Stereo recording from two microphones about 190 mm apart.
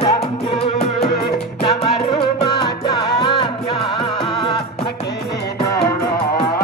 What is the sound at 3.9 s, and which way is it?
Music, 25° left (ahead or behind).